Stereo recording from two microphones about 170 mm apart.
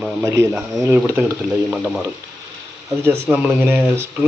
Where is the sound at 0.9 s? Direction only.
15° right (ahead or behind).